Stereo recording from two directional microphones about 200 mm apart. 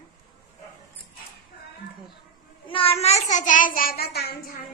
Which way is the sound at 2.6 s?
25° left (ahead or behind).